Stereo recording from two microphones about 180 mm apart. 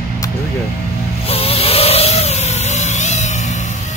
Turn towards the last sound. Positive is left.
turn(degrees=40)  # may be behind; listen again after turning